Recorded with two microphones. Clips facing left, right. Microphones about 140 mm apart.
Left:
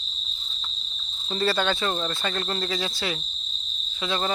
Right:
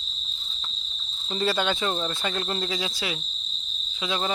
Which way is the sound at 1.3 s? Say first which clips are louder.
Left 1 dB; 15° right (ahead or behind).